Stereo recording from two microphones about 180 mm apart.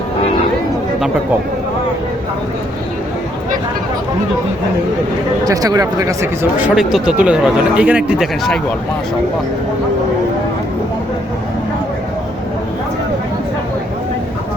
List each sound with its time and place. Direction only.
5.5 s speech: 20° right (ahead or behind)
6.7 s speech: 5° right (ahead or behind)